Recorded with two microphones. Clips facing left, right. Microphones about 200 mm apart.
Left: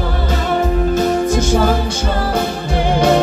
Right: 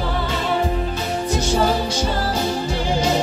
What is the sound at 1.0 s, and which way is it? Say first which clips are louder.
Music: left 8 dB; 50° left (ahead or behind).